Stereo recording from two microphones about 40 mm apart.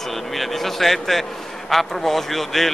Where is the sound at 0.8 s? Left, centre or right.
Centre.